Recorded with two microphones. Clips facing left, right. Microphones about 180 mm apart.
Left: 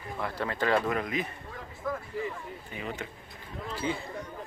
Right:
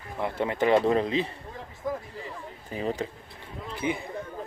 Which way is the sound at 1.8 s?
20° right (ahead or behind).